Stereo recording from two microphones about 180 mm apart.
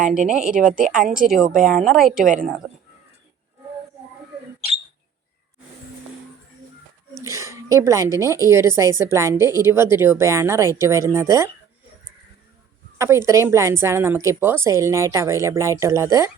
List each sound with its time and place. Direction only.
0.3 s speech: 5° right (ahead or behind)
0.7 s a woman's voice: 45° right (ahead or behind)
1.9 s speech: centre (ahead or behind)
2.1 s a woman's voice: 45° right (ahead or behind)
7.2 s a woman's voice: 15° right (ahead or behind)
13.0 s a woman's voice: 15° right (ahead or behind)